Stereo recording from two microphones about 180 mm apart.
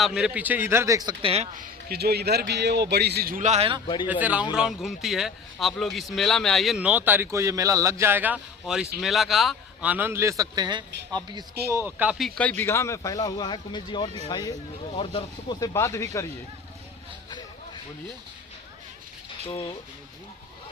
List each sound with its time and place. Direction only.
0.0 s a man's voice: 5° right (ahead or behind); by 1.6 s 35° right (ahead or behind)
1.6 s speech: 60° right (ahead or behind); by 3.8 s 35° right (ahead or behind)
4.0 s a man's voice: 10° right (ahead or behind)
11.7 s speech: 10° right (ahead or behind); by 15.7 s 25° left (ahead or behind)
15.7 s speech: 15° left (ahead or behind)
19.5 s speech: 30° left (ahead or behind)